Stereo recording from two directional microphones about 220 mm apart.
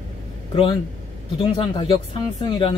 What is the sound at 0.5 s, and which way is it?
Speech, 25° left (ahead or behind).